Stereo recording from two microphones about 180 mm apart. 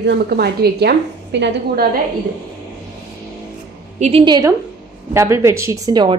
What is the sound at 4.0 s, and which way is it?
Speech, 30° right (ahead or behind).